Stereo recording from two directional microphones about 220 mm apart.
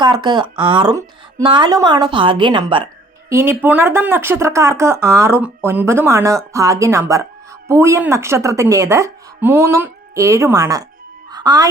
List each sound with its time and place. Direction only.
0.0 s a woman's voice: 20° right (ahead or behind)
3.2 s speech: 10° right (ahead or behind)
11.3 s music: 20° right (ahead or behind)